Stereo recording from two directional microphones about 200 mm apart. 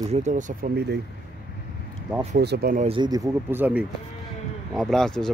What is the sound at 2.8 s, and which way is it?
Speech, 25° right (ahead or behind).